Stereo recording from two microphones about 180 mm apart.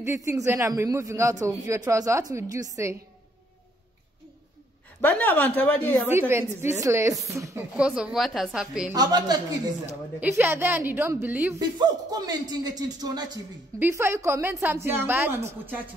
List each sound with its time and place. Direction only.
0.0 s a woman's voice: 15° right (ahead or behind)
5.0 s speech: 10° left (ahead or behind)
6.0 s a woman's voice: 15° right (ahead or behind)
7.7 s a woman's voice: 5° right (ahead or behind)
8.9 s a man's voice: 20° right (ahead or behind)
10.2 s a woman's voice: 10° right (ahead or behind)
11.8 s a man's voice: 20° right (ahead or behind)